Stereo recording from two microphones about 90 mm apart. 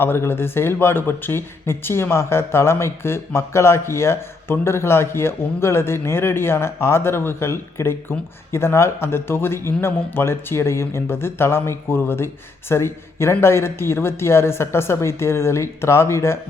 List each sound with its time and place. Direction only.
0.0 s speech: 25° left (ahead or behind)